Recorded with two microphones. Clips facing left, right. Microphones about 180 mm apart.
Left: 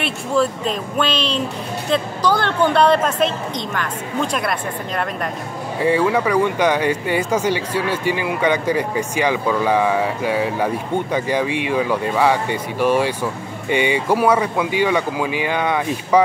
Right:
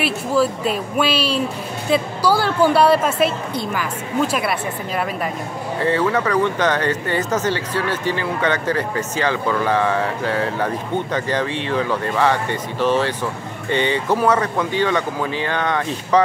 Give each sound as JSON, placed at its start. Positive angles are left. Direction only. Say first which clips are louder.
{"t": 0.0, "sound": "speech", "louder": "right 1 dB", "side_deg": -5}
{"t": 5.8, "sound": "speech", "louder": "left 2 dB", "side_deg": 10}